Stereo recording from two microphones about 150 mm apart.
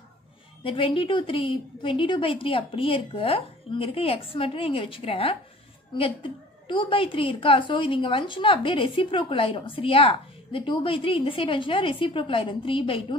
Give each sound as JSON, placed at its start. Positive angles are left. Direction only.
{"t": 0.7, "sound": "a woman's voice", "side_deg": 35}